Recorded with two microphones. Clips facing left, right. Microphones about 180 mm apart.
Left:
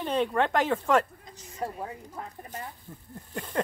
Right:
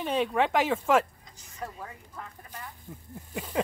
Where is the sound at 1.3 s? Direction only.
35° left (ahead or behind).